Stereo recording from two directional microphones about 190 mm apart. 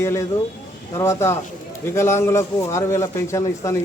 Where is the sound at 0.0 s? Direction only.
15° left (ahead or behind).